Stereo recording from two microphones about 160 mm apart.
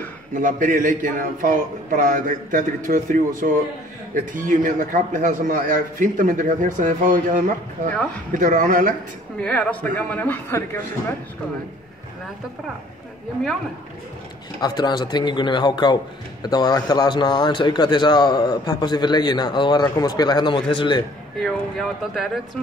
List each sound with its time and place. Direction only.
0.3 s a man's voice: 55° right (ahead or behind)
9.4 s speech: 10° left (ahead or behind)
14.6 s a man's voice: 25° left (ahead or behind)
21.4 s speech: centre (ahead or behind)